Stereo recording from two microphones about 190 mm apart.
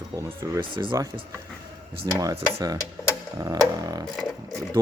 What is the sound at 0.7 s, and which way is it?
Speech, 25° right (ahead or behind).